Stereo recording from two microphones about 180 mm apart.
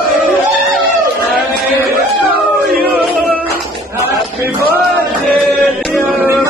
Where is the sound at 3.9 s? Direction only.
15° right (ahead or behind).